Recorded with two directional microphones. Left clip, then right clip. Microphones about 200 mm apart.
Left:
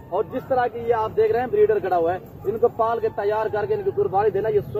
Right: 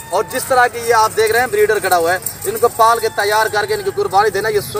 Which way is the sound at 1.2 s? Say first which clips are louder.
Right 5 dB; 10° right (ahead or behind).